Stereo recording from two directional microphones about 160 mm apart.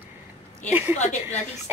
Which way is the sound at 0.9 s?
45° left (ahead or behind).